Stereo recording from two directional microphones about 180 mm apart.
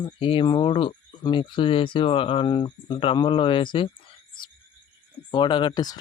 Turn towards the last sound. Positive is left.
turn(degrees=20)  # may be behind; listen again after turning